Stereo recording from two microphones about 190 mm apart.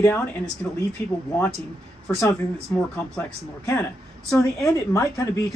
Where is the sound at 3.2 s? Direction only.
10° left (ahead or behind).